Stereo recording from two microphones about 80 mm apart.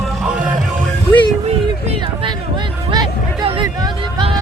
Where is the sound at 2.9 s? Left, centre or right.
Right.